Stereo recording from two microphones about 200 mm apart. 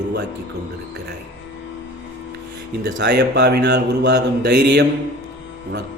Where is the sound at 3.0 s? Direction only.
55° right (ahead or behind).